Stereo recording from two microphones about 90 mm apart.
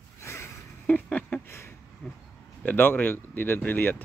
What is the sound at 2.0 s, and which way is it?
Pig, 10° left (ahead or behind).